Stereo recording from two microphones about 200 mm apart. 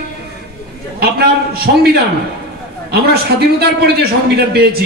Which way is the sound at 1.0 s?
50° right (ahead or behind).